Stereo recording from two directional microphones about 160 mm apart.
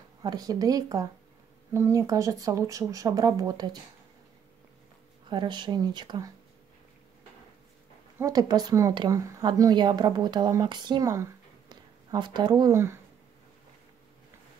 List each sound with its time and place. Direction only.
0.2 s a woman's voice: 25° right (ahead or behind)
5.3 s a woman's voice: 30° right (ahead or behind)
8.2 s a woman's voice: 25° right (ahead or behind)